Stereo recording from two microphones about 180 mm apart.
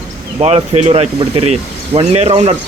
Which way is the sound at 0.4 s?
35° right (ahead or behind).